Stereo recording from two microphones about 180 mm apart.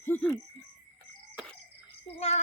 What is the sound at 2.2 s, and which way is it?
Music, 35° left (ahead or behind).